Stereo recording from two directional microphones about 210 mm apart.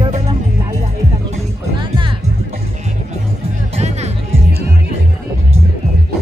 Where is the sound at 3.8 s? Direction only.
30° right (ahead or behind).